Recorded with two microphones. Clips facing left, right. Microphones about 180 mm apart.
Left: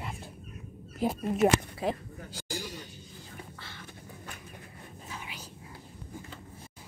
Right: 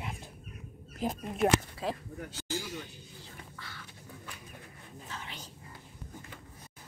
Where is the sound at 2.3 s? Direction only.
35° left (ahead or behind).